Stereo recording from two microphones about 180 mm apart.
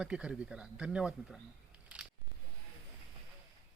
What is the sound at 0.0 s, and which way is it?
Speech, 5° right (ahead or behind).